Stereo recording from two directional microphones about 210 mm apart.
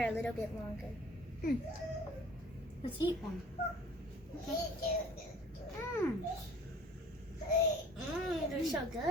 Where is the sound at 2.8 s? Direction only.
20° left (ahead or behind).